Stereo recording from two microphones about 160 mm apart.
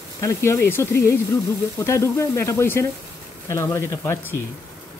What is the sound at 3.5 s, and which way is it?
Sizzle, 20° left (ahead or behind).